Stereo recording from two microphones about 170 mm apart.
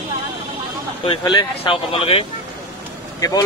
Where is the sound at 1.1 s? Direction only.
30° left (ahead or behind).